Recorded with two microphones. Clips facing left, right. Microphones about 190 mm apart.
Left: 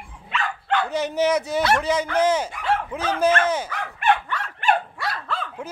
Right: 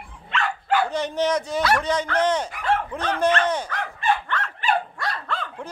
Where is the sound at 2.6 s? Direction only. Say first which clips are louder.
Even; 5° left (ahead or behind).